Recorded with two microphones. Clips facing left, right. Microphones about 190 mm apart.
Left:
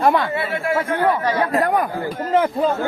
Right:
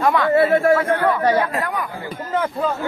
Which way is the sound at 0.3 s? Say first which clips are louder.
Right 8 dB; 45° right (ahead or behind).